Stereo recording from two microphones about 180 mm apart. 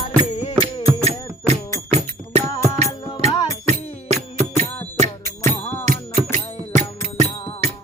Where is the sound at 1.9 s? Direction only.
35° right (ahead or behind).